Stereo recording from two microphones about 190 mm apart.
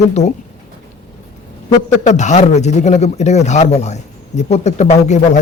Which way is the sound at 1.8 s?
40° left (ahead or behind).